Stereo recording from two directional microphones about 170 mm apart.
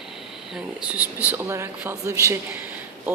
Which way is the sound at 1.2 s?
10° right (ahead or behind).